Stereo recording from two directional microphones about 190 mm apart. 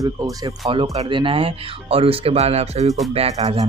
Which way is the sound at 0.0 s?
20° right (ahead or behind).